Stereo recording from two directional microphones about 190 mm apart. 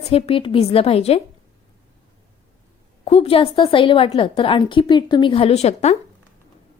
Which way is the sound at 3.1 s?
30° left (ahead or behind).